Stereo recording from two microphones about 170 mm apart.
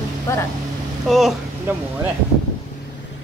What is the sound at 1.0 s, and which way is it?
Speech, centre (ahead or behind).